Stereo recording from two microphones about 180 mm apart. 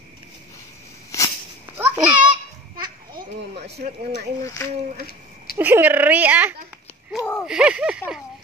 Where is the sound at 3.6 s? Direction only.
35° right (ahead or behind).